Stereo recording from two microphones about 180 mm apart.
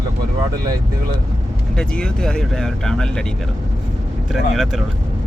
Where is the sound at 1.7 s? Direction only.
5° left (ahead or behind).